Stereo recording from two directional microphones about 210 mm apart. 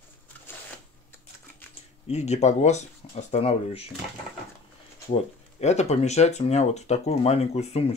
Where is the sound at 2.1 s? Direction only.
30° left (ahead or behind).